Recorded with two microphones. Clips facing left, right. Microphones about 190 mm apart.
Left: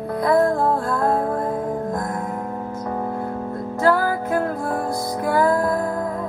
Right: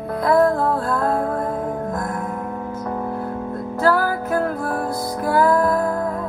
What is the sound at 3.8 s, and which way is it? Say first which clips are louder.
Music: even; 25° left (ahead or behind).